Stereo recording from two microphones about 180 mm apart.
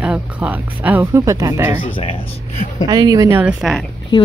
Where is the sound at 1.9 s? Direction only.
30° left (ahead or behind).